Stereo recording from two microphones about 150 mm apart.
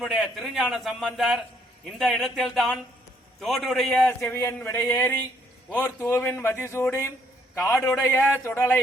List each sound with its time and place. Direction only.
0.0 s a man's voice: centre (ahead or behind)
4.2 s speech: 20° left (ahead or behind)
7.7 s a man's voice: 5° left (ahead or behind)
8.0 s speech: 15° left (ahead or behind)